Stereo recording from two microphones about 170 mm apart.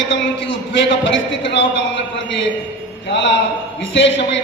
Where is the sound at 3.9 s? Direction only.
90° left.